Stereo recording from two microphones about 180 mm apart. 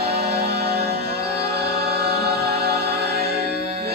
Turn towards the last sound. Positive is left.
turn(degrees=-60)  # may be behind; listen again after turning